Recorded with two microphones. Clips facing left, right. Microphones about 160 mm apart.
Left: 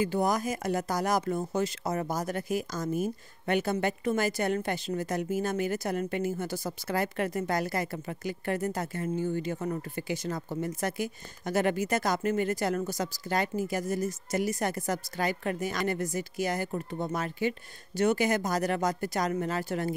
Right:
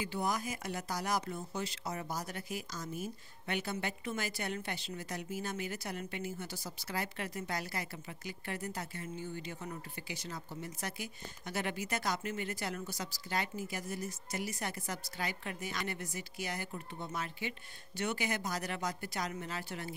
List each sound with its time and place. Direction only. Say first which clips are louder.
0.0 s speech: left 9 dB; 45° left (ahead or behind)